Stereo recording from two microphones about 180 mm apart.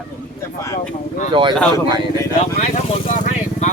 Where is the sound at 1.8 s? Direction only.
25° right (ahead or behind).